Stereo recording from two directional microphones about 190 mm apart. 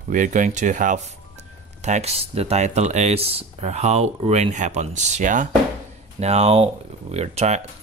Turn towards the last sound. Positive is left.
turn(degrees=-35)  # may be behind; listen again after turning